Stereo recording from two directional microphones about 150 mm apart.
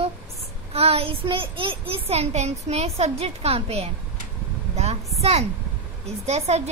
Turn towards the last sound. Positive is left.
turn(degrees=-45)  # may be behind; listen again after turning